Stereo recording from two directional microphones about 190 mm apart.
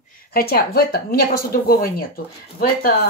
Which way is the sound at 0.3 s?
50° left (ahead or behind).